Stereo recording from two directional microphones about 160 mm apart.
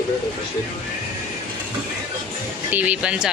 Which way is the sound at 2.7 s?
10° right (ahead or behind).